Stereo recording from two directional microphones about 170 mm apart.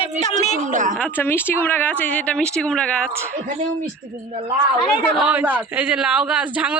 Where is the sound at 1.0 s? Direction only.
10° left (ahead or behind).